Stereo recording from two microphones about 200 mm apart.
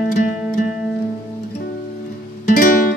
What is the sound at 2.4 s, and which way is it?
Music, 40° left (ahead or behind).